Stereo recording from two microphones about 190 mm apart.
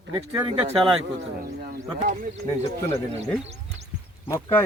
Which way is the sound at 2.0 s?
45° right (ahead or behind).